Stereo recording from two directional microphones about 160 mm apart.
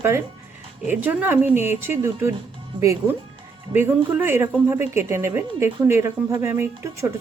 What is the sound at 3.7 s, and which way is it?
A woman's voice, 15° right (ahead or behind).